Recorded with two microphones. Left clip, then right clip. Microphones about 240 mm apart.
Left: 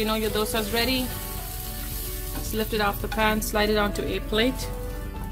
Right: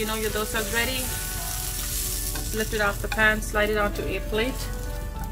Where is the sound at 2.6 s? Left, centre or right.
Left.